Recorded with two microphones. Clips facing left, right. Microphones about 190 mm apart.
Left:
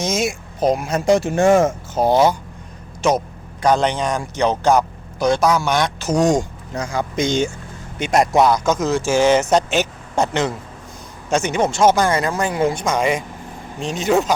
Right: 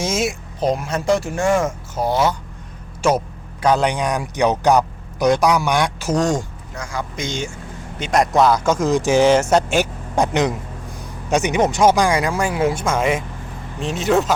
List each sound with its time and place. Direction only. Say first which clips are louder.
0.0 s speech: even; 5° right (ahead or behind)
0.6 s speech: left 2 dB; 5° left (ahead or behind)
1.0 s speech: left 4 dB; 20° left (ahead or behind)
3.6 s speech: even; 5° right (ahead or behind)
6.1 s speech: left 4 dB; 15° left (ahead or behind)
7.9 s speech: left 1 dB; 10° left (ahead or behind)
8.5 s speech: right 1 dB; 10° right (ahead or behind)